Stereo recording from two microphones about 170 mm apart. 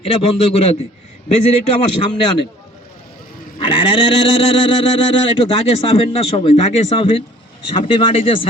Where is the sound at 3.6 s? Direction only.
30° left (ahead or behind).